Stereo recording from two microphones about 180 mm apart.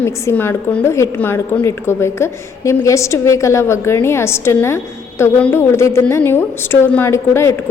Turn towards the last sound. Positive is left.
turn(degrees=15)  # may be behind; listen again after turning